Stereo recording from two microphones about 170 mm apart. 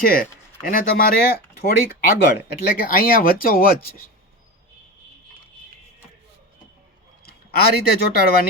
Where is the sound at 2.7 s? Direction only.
60° left (ahead or behind).